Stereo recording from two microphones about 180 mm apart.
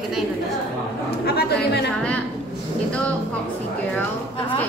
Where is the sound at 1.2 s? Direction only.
65° left (ahead or behind).